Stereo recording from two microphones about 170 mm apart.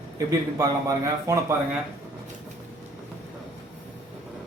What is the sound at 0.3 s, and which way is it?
A man's voice, 20° right (ahead or behind).